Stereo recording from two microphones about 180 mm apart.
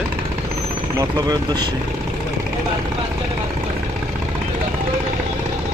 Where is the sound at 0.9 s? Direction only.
20° right (ahead or behind).